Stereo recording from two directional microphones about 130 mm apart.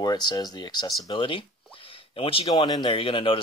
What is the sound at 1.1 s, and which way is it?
Speech, 40° left (ahead or behind).